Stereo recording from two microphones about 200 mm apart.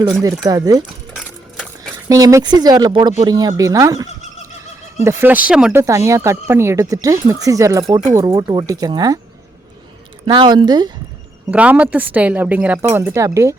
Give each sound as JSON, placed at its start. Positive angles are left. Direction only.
{"t": 0.0, "sound": "speech", "side_deg": -20}
{"t": 2.0, "sound": "speech", "side_deg": -15}
{"t": 10.2, "sound": "speech", "side_deg": -20}
{"t": 11.5, "sound": "speech", "side_deg": -5}